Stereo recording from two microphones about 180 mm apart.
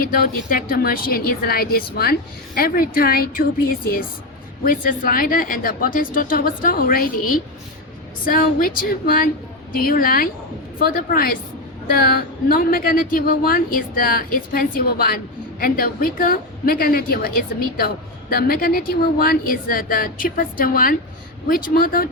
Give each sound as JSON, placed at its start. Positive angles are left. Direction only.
{"t": 0.0, "sound": "a woman's voice", "side_deg": 50}